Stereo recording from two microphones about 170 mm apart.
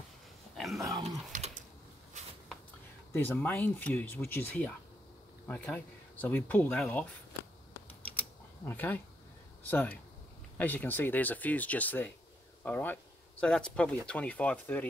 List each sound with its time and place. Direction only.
0.7 s dog: 20° right (ahead or behind)
1.3 s typing: 45° right (ahead or behind)
3.1 s speech: 10° left (ahead or behind)
8.0 s typing: 10° left (ahead or behind)
9.6 s speech: 10° left (ahead or behind)